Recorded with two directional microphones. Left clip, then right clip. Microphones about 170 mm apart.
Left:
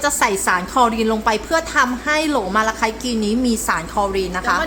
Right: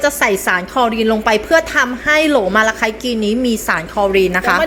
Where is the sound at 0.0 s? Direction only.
20° right (ahead or behind).